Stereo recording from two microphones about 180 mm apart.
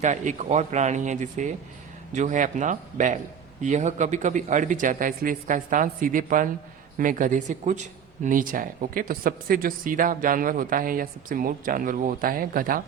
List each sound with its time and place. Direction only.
0.0 s speech: 45° right (ahead or behind)